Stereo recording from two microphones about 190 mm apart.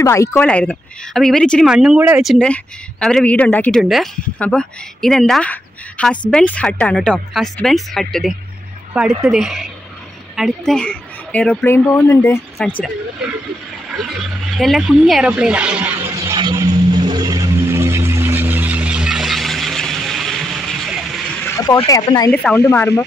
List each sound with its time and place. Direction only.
0.0 s a woman's voice: 15° left (ahead or behind); by 2.3 s 10° right (ahead or behind)
2.3 s a woman's voice: 5° left (ahead or behind)
13.9 s speech: centre (ahead or behind)
14.6 s music: centre (ahead or behind)
21.5 s speech: 20° left (ahead or behind)
22.3 s a woman's voice: 5° left (ahead or behind)